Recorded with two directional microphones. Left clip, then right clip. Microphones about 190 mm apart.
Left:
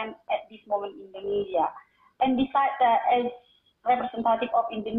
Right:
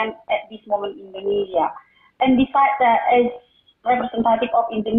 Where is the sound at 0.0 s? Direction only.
45° right (ahead or behind).